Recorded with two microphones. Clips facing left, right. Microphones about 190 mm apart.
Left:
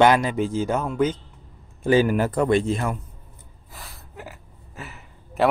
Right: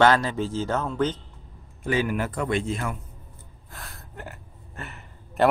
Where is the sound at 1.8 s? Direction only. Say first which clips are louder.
Left 7 dB; 35° left (ahead or behind).